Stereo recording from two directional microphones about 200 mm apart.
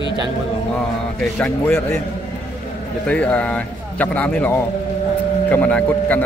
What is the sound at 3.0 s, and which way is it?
A man's voice, 5° left (ahead or behind).